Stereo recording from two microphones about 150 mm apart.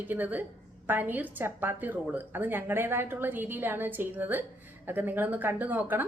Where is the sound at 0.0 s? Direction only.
10° right (ahead or behind).